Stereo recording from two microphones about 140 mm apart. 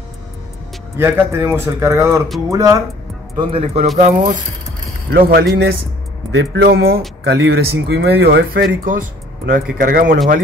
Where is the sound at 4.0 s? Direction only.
60° right (ahead or behind).